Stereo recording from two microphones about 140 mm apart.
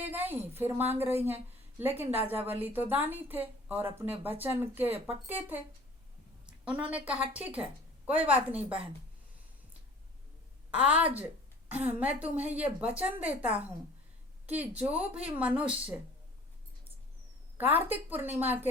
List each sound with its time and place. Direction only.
0.0 s a woman's voice: 15° right (ahead or behind)
10.7 s a woman's voice: 10° right (ahead or behind)
17.6 s a woman's voice: 15° right (ahead or behind)